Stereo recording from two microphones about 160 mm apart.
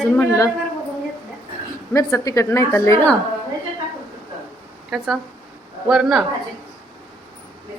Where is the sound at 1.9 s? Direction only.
20° left (ahead or behind).